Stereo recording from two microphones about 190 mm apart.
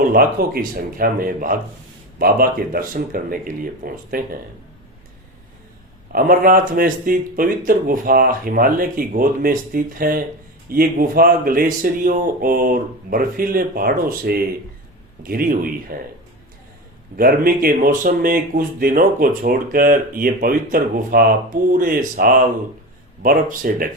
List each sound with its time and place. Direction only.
0.0 s speech: 50° right (ahead or behind)
6.1 s speech: 50° right (ahead or behind)
17.2 s speech: 50° right (ahead or behind)